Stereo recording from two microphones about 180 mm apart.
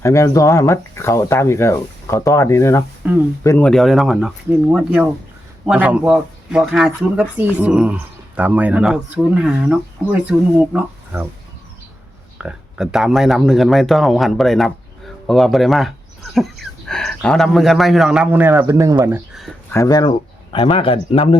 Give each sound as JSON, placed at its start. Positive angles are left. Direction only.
{"t": 0.0, "sound": "speech", "side_deg": 15}
{"t": 3.0, "sound": "speech", "side_deg": -10}
{"t": 3.4, "sound": "speech", "side_deg": 15}
{"t": 3.7, "sound": "speech", "side_deg": 0}
{"t": 12.4, "sound": "speech", "side_deg": -5}
{"t": 19.7, "sound": "speech", "side_deg": 20}